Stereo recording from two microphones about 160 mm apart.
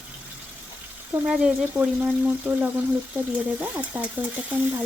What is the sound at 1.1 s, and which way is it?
Speech, 5° right (ahead or behind).